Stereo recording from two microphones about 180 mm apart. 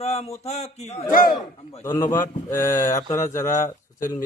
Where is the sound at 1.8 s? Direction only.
15° left (ahead or behind).